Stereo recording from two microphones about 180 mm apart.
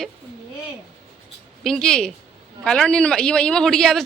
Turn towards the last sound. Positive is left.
turn(degrees=5)  # may be behind; listen again after turning